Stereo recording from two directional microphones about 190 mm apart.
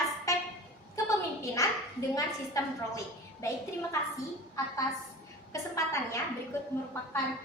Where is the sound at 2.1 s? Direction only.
15° left (ahead or behind).